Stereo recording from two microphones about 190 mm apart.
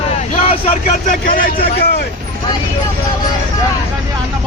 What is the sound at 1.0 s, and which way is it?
Speech, 45° left (ahead or behind).